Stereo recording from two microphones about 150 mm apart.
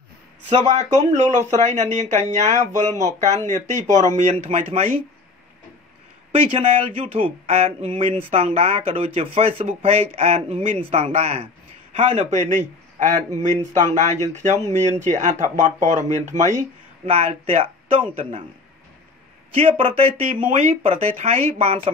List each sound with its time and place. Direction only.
0.5 s speech: 55° right (ahead or behind)
7.2 s speech: 40° right (ahead or behind)
19.5 s speech: 40° right (ahead or behind)
20.3 s speech: 60° right (ahead or behind)
20.6 s speech: 45° right (ahead or behind)